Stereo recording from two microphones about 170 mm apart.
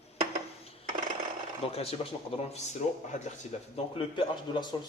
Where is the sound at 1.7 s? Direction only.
35° left (ahead or behind).